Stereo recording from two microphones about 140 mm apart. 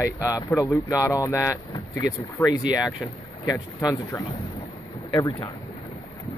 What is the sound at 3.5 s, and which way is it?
Speech, 30° left (ahead or behind).